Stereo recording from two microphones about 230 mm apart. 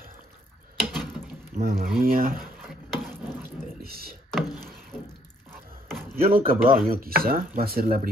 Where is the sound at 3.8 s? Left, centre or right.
Right.